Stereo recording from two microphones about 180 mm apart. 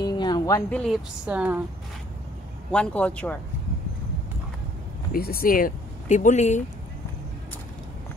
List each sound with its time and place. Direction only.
0.0 s a sound: 25° left (ahead or behind)
0.7 s a woman's voice: 5° left (ahead or behind)
2.7 s a man's voice: 5° left (ahead or behind)
5.1 s speech: 55° left (ahead or behind)